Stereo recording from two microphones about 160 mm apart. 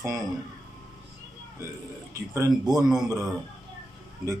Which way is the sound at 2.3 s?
20° right (ahead or behind).